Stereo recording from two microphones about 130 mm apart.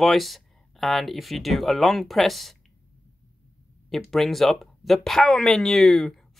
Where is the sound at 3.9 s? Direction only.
Centre (ahead or behind).